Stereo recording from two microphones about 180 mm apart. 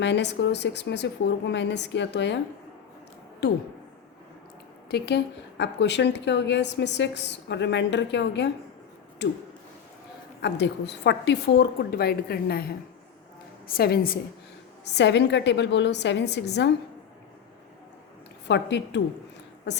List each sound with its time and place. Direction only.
0.0 s a woman's voice: 75° left (ahead or behind)
3.4 s a woman's voice: 75° left (ahead or behind)
4.9 s a woman's voice: 65° left (ahead or behind)
10.4 s a woman's voice: 70° left (ahead or behind)
14.9 s a woman's voice: 75° left (ahead or behind)
18.4 s a woman's voice: 75° left (ahead or behind)